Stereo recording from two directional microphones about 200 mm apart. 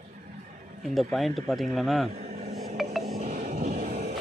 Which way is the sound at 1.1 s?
Centre (ahead or behind).